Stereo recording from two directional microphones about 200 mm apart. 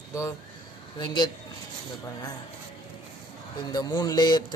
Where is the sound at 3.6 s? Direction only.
20° left (ahead or behind).